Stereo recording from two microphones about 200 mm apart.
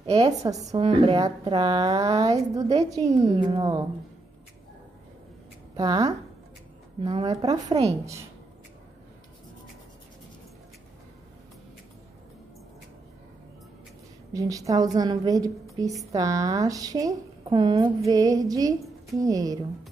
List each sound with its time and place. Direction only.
0.0 s a woman's voice: 30° right (ahead or behind)
0.4 s a woman's voice: 15° right (ahead or behind)
3.2 s a woman's voice: 35° right (ahead or behind)
3.4 s a woman's voice: 20° right (ahead or behind)
5.8 s a woman's voice: 20° right (ahead or behind)
7.0 s a woman's voice: 30° right (ahead or behind)
7.2 s a woman's voice: 20° right (ahead or behind)
14.3 s a woman's voice: 15° right (ahead or behind)